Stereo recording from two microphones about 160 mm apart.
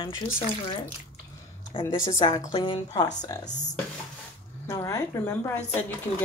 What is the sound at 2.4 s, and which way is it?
Speech, 25° left (ahead or behind).